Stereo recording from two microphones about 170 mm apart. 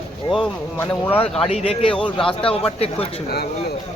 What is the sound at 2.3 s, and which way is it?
Speech, 35° left (ahead or behind).